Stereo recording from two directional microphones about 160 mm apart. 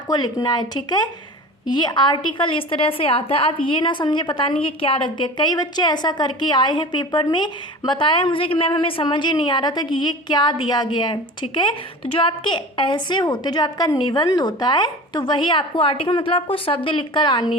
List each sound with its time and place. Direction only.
0.1 s a woman's voice: 25° left (ahead or behind)